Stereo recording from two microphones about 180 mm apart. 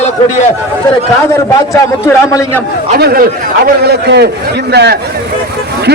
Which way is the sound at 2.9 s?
55° right (ahead or behind).